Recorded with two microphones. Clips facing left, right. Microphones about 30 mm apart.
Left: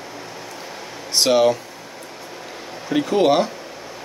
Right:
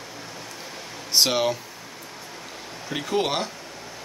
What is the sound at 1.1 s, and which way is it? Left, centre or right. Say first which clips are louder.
Speech: left 6 dB; centre.